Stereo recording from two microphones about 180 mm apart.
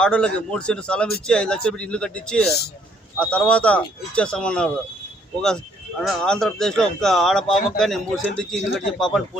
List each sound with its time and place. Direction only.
0.0 s speech: 5° left (ahead or behind)
6.0 s speech: 5° left (ahead or behind)